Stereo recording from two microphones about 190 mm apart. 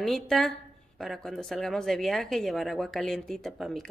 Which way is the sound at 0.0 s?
Centre (ahead or behind).